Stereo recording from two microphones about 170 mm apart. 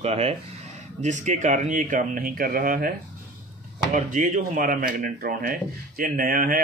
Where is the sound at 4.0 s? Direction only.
50° right (ahead or behind).